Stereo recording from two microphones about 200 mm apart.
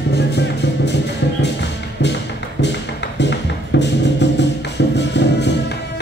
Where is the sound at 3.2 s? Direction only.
60° left (ahead or behind).